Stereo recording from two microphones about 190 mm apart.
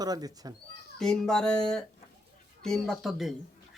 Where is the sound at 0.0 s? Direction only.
20° right (ahead or behind).